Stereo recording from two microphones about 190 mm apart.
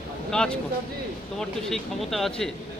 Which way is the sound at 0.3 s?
5° left (ahead or behind).